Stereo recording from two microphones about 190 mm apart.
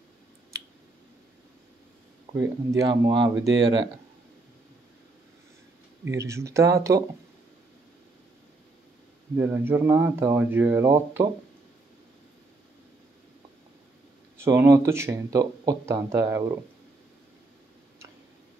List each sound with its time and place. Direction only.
2.3 s speech: 15° right (ahead or behind)
6.0 s speech: 15° right (ahead or behind)
9.4 s speech: 10° right (ahead or behind)
14.4 s speech: 15° right (ahead or behind)